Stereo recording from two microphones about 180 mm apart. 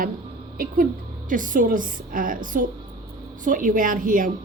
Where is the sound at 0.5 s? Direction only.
50° right (ahead or behind).